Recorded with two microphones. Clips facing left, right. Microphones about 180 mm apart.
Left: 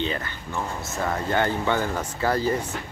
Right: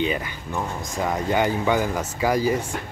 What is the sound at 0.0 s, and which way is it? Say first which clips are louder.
Speech: right 3 dB; 10° right (ahead or behind).